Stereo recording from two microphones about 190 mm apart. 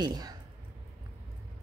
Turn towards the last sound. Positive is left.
turn(degrees=-20)  # may be behind; listen again after turning